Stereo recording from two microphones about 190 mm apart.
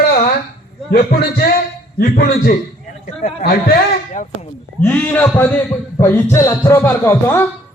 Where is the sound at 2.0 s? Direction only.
55° left (ahead or behind).